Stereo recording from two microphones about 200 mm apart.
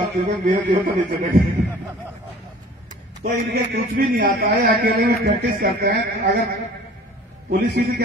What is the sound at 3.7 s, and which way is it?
A man's voice, 45° right (ahead or behind).